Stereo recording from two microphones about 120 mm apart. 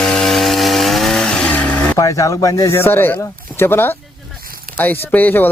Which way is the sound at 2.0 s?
30° left (ahead or behind).